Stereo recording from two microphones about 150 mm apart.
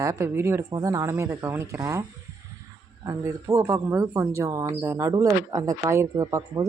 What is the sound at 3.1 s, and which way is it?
Speech, 20° right (ahead or behind).